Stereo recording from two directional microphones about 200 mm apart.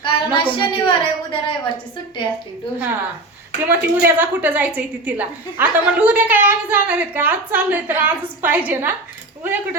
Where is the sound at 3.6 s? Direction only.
10° right (ahead or behind).